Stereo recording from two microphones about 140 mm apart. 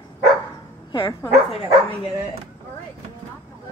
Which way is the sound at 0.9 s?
30° left (ahead or behind).